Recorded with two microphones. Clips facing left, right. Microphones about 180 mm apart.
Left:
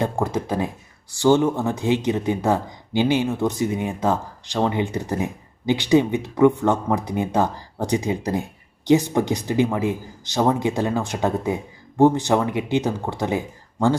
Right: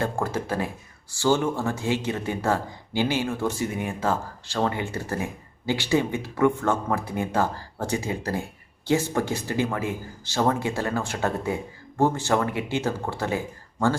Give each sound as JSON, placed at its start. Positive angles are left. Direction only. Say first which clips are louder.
{"t": 0.0, "sound": "speech", "louder": "left 4 dB", "side_deg": 15}